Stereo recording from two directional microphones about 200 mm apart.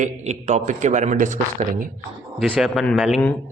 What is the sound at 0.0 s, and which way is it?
A man's voice, 35° right (ahead or behind).